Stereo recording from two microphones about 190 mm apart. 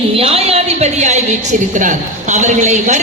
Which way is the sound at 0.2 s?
30° right (ahead or behind).